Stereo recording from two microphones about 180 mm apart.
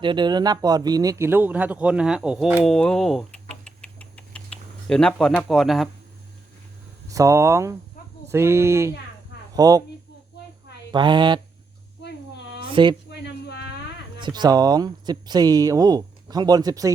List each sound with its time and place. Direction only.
0.0 s speech: 25° right (ahead or behind); by 3.2 s centre (ahead or behind)
3.5 s rodents: 5° left (ahead or behind)
4.9 s speech: 5° left (ahead or behind)
7.1 s speech: 15° right (ahead or behind)
10.9 s speech: 25° right (ahead or behind)
12.6 s a sound: 25° right (ahead or behind)
13.1 s a sound: 70° left (ahead or behind)
14.2 s speech: 25° right (ahead or behind)